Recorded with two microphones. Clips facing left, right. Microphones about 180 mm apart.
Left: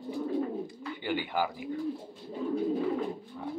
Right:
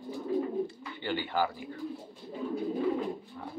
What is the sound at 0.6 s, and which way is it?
Bird, 15° left (ahead or behind).